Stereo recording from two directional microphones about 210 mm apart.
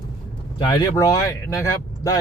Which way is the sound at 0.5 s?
20° left (ahead or behind).